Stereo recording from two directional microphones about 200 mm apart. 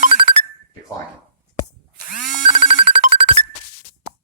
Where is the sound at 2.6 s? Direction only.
35° right (ahead or behind).